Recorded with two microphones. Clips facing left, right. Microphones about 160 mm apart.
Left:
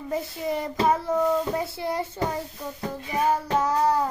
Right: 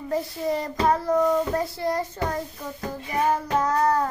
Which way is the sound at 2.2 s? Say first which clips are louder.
Even; 5° left (ahead or behind).